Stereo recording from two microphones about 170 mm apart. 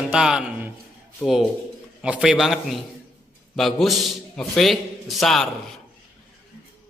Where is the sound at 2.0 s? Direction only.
5° right (ahead or behind).